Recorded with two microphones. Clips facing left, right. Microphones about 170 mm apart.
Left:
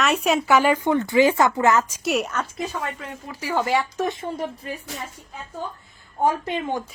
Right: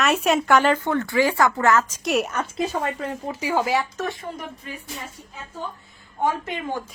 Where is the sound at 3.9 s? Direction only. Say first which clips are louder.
Left 3 dB; 20° left (ahead or behind).